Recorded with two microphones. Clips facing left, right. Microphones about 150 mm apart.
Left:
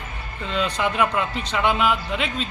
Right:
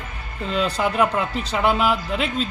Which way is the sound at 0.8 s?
40° right (ahead or behind).